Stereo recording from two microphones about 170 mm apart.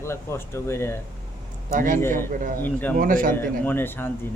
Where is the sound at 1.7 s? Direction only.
50° right (ahead or behind).